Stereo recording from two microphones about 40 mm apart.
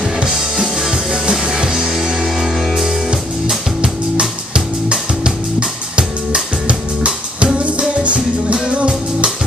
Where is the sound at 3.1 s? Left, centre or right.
Centre.